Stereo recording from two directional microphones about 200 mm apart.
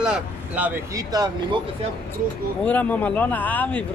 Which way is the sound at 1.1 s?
20° right (ahead or behind).